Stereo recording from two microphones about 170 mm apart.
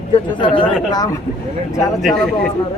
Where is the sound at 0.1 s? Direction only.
30° left (ahead or behind).